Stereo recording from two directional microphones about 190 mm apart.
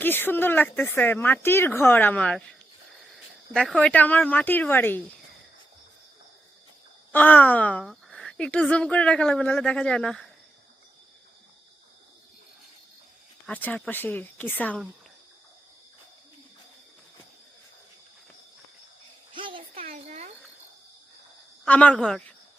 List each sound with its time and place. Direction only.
0.0 s speech: 10° left (ahead or behind)
7.1 s speech: 10° left (ahead or behind)
13.5 s speech: 10° left (ahead or behind)
19.3 s a sound: 25° right (ahead or behind)
21.6 s speech: 5° left (ahead or behind)